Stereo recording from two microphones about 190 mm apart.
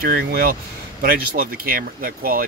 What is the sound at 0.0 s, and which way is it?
Speech, 55° right (ahead or behind).